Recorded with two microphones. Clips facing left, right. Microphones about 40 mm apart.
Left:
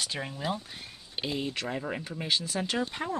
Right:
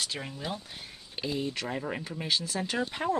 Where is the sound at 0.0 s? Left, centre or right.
Centre.